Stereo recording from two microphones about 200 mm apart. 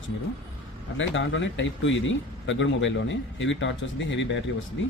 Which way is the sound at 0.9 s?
70° left (ahead or behind).